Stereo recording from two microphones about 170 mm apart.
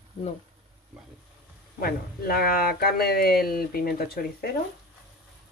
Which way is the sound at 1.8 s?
60° left (ahead or behind).